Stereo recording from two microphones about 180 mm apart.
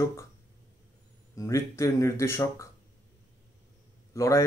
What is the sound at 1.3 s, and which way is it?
Speech, 15° left (ahead or behind).